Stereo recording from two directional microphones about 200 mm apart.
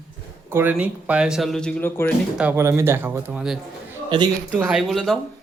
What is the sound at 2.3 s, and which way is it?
Speech, 10° right (ahead or behind).